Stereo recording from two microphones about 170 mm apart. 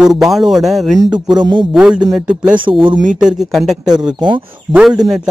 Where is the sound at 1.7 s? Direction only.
5° right (ahead or behind).